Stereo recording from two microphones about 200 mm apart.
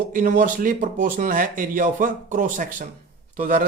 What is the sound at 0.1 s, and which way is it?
A man's voice, 40° right (ahead or behind).